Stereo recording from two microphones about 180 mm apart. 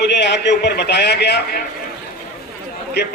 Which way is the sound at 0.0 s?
70° left (ahead or behind).